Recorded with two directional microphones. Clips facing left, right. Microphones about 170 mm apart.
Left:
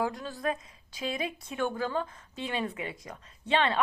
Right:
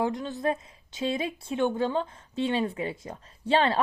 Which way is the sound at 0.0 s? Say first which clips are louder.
Right 4 dB; 20° right (ahead or behind).